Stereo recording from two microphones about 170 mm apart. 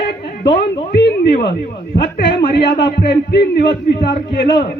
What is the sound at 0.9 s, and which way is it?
A man's voice, 85° left.